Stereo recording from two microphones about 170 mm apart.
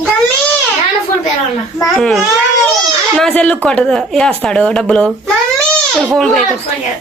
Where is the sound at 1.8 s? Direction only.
Centre (ahead or behind).